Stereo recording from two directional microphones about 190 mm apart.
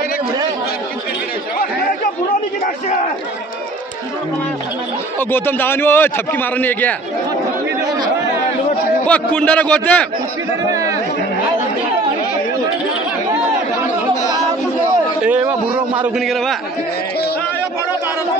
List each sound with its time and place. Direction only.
5.3 s a man's voice: 10° left (ahead or behind)
9.0 s a man's voice: 5° left (ahead or behind)
10.7 s speech: 15° right (ahead or behind)
15.2 s a man's voice: 10° right (ahead or behind)
16.3 s a man's voice: centre (ahead or behind)